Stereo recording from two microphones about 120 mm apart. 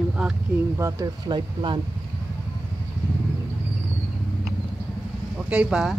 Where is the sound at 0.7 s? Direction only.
25° right (ahead or behind).